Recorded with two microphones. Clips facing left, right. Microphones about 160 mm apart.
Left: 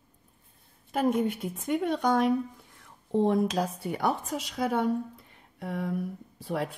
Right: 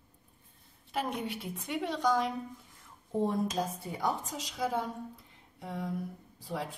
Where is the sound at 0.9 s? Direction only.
50° left (ahead or behind).